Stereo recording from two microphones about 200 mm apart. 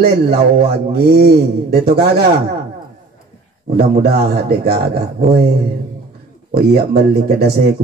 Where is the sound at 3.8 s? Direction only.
55° right (ahead or behind).